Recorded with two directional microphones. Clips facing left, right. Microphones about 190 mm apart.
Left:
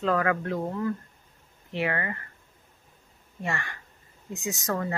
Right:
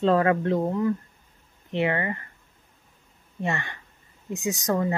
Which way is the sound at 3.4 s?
20° right (ahead or behind).